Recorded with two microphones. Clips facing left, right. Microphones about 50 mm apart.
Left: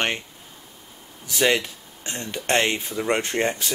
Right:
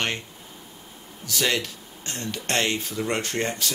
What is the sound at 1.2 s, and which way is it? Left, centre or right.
Speech, left.